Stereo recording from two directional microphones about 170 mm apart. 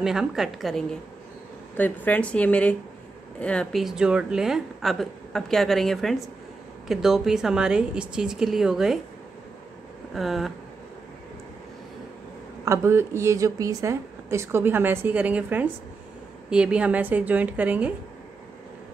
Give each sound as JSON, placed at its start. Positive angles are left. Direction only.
{"t": 0.0, "sound": "a woman's voice", "side_deg": -5}
{"t": 10.1, "sound": "a woman's voice", "side_deg": 0}
{"t": 12.6, "sound": "a woman's voice", "side_deg": -15}